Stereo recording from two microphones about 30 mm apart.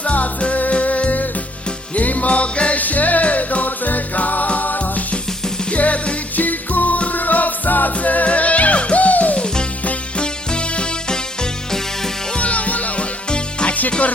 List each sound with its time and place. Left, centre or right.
0.0 s music: left
2.7 s music: left
5.7 s music: left
6.3 s music: left
9.3 s music: left
12.4 s music: left
13.3 s music: left